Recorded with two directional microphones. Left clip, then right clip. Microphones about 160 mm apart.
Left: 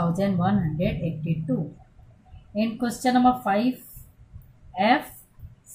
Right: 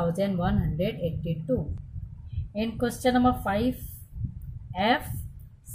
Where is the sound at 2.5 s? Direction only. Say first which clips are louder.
Left 2 dB; 45° right (ahead or behind).